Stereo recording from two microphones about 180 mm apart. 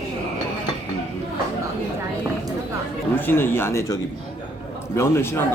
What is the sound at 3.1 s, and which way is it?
A man's voice, 10° left (ahead or behind).